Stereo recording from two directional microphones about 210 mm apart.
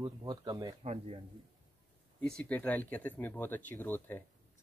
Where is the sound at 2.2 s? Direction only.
5° left (ahead or behind).